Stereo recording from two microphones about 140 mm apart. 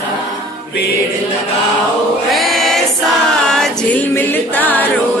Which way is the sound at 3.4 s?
5° left (ahead or behind).